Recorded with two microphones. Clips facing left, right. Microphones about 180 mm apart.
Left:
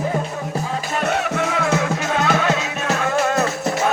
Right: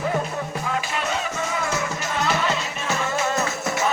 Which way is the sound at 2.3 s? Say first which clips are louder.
Left 5 dB; 70° left (ahead or behind).